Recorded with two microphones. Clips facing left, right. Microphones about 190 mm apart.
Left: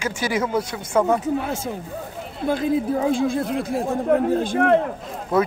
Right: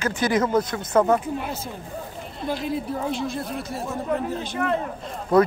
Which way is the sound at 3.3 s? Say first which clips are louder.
Left 6 dB; 90° left.